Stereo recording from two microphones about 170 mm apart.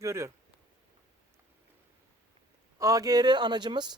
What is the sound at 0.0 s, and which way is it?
Speech, 15° right (ahead or behind).